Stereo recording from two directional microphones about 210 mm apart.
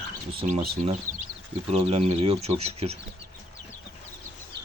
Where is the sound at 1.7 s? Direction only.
30° right (ahead or behind).